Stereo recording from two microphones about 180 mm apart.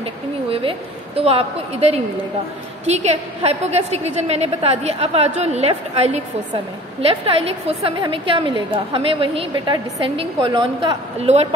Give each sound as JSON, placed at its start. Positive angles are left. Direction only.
{"t": 0.0, "sound": "a woman's voice", "side_deg": -30}